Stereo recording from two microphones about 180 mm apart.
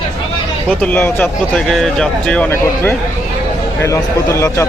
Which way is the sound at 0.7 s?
5° left (ahead or behind).